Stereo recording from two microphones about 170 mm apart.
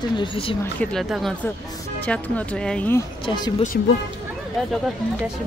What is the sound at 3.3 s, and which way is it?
Speech, 25° left (ahead or behind).